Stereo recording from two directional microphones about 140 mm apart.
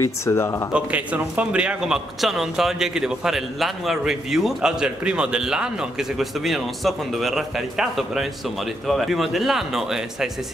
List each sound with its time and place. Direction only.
0.2 s speech: 20° left (ahead or behind)
0.7 s a man's voice: 10° right (ahead or behind)